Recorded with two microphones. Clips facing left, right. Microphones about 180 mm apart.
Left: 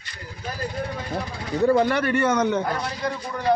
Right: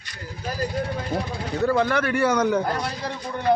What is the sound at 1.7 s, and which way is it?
Speech, 20° left (ahead or behind).